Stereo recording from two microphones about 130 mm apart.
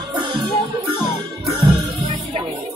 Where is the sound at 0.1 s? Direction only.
35° right (ahead or behind).